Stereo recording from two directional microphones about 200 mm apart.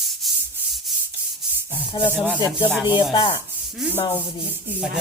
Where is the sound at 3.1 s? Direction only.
25° left (ahead or behind).